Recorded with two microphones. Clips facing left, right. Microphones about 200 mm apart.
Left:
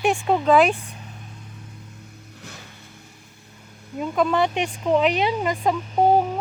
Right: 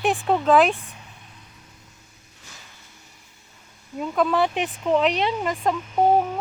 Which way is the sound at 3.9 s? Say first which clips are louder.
Left 1 dB; centre (ahead or behind).